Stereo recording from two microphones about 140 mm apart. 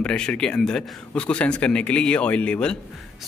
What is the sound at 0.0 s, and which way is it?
A man's voice, 5° left (ahead or behind).